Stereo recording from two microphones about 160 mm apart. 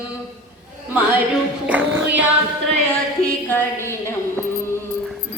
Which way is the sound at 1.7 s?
10° right (ahead or behind).